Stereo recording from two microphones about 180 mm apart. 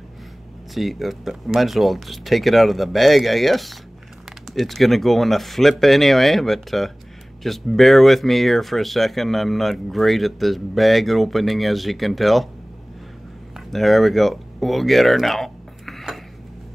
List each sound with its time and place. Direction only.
0.7 s speech: centre (ahead or behind)
13.7 s speech: centre (ahead or behind)